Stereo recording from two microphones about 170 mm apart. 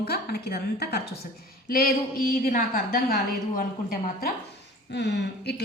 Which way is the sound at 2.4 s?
60° left (ahead or behind).